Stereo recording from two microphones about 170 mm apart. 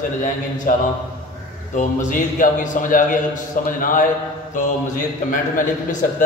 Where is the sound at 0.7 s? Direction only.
55° left (ahead or behind).